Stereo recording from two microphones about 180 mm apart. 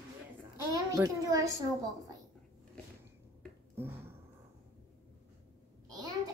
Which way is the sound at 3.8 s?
15° right (ahead or behind).